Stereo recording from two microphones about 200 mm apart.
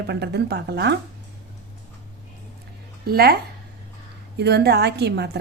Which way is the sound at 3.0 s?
50° right (ahead or behind).